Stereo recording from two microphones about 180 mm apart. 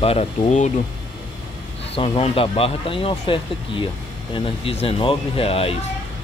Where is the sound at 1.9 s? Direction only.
35° left (ahead or behind).